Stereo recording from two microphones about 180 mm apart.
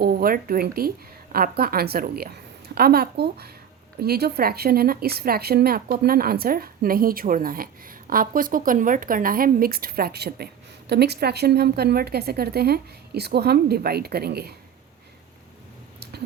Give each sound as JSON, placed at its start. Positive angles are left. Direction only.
{"t": 0.0, "sound": "a woman's voice", "side_deg": -55}